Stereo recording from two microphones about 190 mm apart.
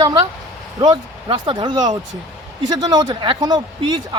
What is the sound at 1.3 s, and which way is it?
Speech, 25° right (ahead or behind).